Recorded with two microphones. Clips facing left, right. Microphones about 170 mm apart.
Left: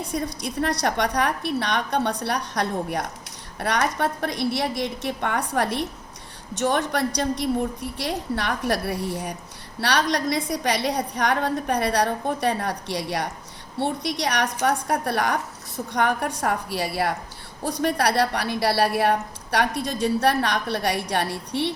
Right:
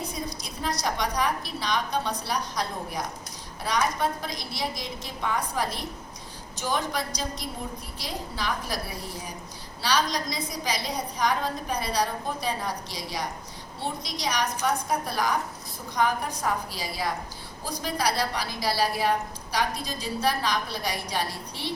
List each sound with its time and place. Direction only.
0.1 s a woman's voice: 65° left (ahead or behind)